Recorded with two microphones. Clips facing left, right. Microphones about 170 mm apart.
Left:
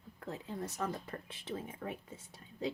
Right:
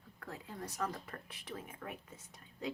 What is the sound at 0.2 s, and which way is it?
Speech, 25° left (ahead or behind).